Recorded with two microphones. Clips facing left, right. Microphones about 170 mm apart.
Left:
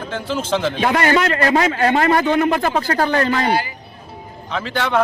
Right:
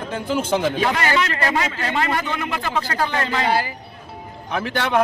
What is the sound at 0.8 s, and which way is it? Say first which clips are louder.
A man's voice: left 5 dB; 40° left (ahead or behind).